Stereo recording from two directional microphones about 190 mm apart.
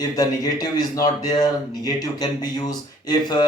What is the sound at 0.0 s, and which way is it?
Speech, 20° left (ahead or behind).